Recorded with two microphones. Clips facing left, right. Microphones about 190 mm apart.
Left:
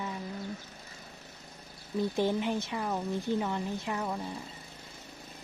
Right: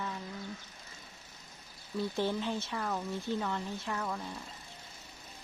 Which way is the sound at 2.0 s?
15° left (ahead or behind).